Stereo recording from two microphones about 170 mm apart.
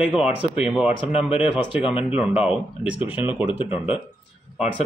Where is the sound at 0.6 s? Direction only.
5° right (ahead or behind).